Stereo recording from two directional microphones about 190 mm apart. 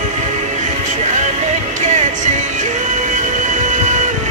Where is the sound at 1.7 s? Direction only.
40° right (ahead or behind).